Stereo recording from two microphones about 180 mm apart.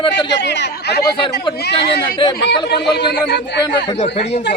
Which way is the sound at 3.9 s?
30° left (ahead or behind).